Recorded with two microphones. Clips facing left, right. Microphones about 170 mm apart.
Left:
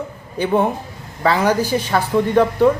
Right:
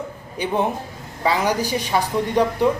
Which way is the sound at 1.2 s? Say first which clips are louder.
Left 4 dB; 15° right (ahead or behind).